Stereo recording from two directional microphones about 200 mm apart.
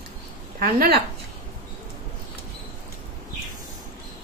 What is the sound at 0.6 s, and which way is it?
Speech, 50° right (ahead or behind).